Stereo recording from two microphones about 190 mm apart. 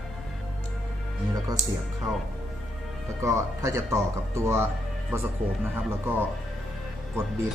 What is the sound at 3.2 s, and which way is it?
Speech, 15° right (ahead or behind).